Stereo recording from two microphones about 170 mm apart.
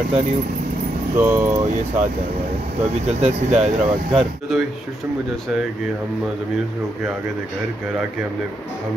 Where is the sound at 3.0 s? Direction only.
45° right (ahead or behind).